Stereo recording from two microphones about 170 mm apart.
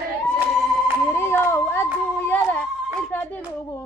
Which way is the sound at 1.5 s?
15° left (ahead or behind).